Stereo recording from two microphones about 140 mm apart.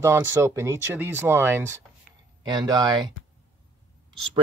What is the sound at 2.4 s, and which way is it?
Speech, 30° right (ahead or behind).